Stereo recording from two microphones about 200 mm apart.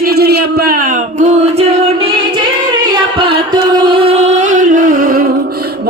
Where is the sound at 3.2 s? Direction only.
25° right (ahead or behind); by 5.3 s 45° right (ahead or behind).